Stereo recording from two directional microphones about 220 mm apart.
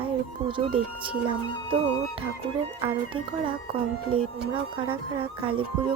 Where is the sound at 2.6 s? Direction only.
25° right (ahead or behind).